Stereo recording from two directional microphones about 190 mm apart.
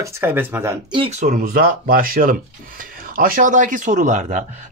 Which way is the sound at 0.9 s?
30° right (ahead or behind).